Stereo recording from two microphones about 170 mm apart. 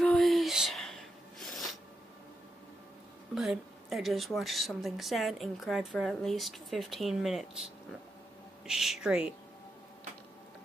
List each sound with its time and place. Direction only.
0.0 s a sound: centre (ahead or behind)
3.3 s speech: centre (ahead or behind)
8.6 s speech: centre (ahead or behind)